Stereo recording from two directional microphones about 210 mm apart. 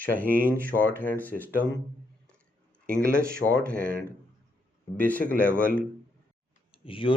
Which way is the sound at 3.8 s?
45° right (ahead or behind).